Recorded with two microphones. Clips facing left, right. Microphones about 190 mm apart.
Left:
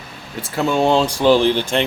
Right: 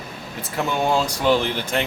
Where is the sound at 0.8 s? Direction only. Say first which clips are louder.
Left 6 dB; 25° left (ahead or behind).